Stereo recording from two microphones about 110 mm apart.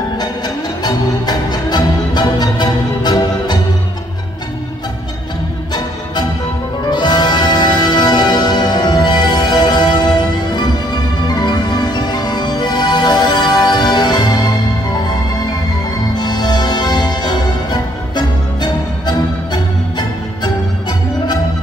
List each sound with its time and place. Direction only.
0.8 s music: 40° left (ahead or behind)
6.9 s music: 40° left (ahead or behind)
16.2 s music: 40° left (ahead or behind)